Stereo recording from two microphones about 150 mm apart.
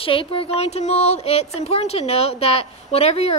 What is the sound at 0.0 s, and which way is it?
Speech, 35° left (ahead or behind).